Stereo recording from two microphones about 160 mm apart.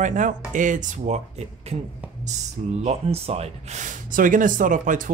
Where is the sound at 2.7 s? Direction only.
40° right (ahead or behind).